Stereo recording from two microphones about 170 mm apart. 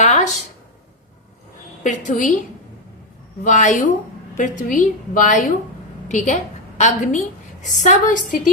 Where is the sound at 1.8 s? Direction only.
50° left (ahead or behind).